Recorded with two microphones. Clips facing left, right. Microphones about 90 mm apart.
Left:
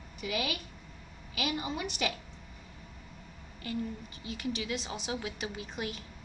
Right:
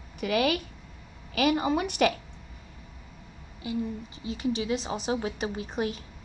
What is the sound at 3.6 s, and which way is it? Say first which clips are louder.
A woman's voice: right 5 dB; 20° right (ahead or behind).